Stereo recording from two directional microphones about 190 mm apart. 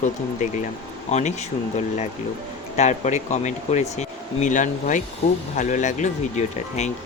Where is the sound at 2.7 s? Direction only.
35° left (ahead or behind).